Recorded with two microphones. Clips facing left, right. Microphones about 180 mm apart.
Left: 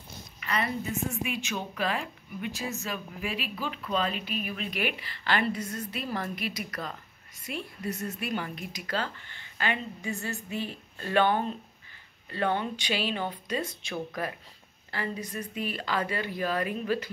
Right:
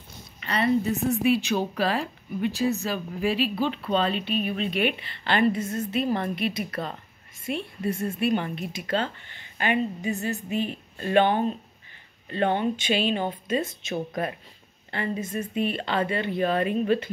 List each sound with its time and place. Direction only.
0.4 s a woman's voice: 30° right (ahead or behind)